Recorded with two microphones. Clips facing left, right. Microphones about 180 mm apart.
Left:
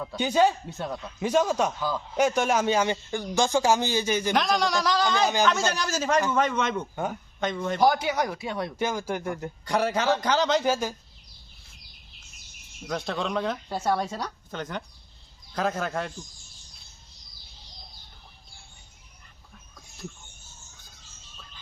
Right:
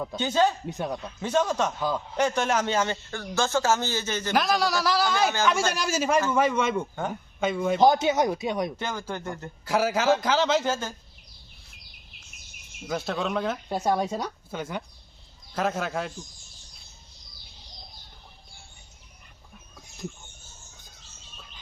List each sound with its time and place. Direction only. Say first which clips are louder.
0.2 s a man's voice: left 2 dB; 10° left (ahead or behind)
0.7 s speech: right 2 dB; 15° right (ahead or behind)
1.2 s a man's voice: left 2 dB; 10° left (ahead or behind)
4.4 s a man's voice: right 4 dB; centre (ahead or behind)
7.8 s speech: right 2 dB; 25° right (ahead or behind)
8.8 s a man's voice: left 4 dB; 10° left (ahead or behind)
9.6 s speech: right 2 dB; 5° right (ahead or behind)
10.6 s a man's voice: left 3 dB; 10° left (ahead or behind)
12.9 s speech: right 1 dB; 5° right (ahead or behind)
13.7 s speech: right 2 dB; 15° right (ahead or behind)